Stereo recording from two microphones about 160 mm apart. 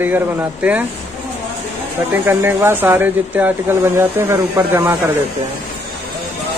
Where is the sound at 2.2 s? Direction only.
15° right (ahead or behind).